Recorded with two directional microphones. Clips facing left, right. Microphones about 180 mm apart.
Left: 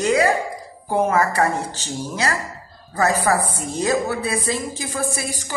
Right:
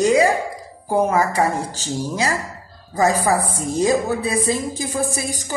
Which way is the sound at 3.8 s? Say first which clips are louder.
Right 1 dB; 15° right (ahead or behind).